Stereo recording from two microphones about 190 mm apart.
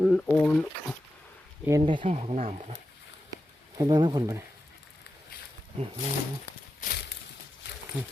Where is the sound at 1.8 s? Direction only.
25° right (ahead or behind).